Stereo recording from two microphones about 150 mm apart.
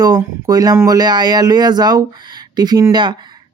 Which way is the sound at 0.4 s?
25° right (ahead or behind).